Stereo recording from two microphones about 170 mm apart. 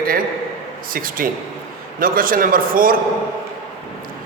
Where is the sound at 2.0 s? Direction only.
55° right (ahead or behind).